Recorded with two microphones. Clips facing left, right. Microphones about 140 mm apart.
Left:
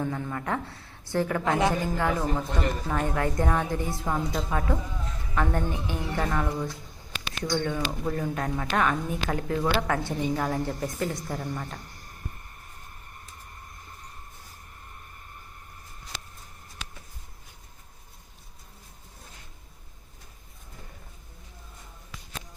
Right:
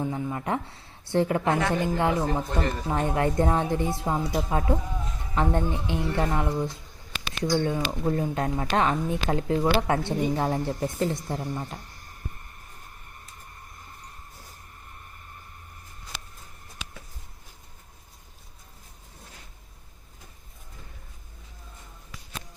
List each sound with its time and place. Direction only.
0.0 s speech: 20° right (ahead or behind)